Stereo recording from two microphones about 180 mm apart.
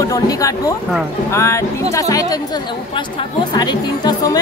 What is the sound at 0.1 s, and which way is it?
A woman's voice, 20° left (ahead or behind).